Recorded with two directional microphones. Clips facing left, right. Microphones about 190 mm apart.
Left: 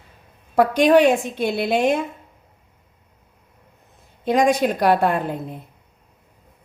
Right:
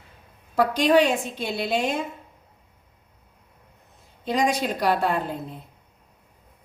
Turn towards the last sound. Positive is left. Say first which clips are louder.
# left 4 dB
turn(degrees=55)  # may be behind; listen again after turning